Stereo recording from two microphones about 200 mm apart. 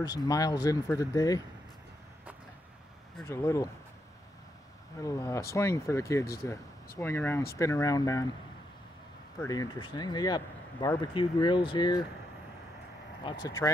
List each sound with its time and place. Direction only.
0.0 s speech: 20° left (ahead or behind)
3.3 s speech: 15° left (ahead or behind)
5.0 s speech: 15° left (ahead or behind)
9.4 s speech: 20° left (ahead or behind)
13.2 s speech: 20° left (ahead or behind)